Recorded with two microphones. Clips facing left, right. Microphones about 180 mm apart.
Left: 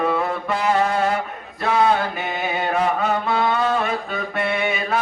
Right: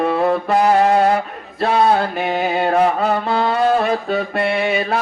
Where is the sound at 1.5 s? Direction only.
35° right (ahead or behind).